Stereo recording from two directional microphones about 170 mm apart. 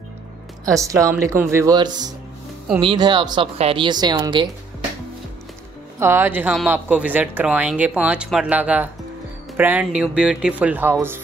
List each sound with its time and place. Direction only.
0.7 s speech: 20° right (ahead or behind)
5.9 s a woman's voice: 15° right (ahead or behind)